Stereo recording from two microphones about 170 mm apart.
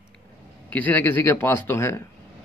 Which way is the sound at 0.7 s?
10° left (ahead or behind).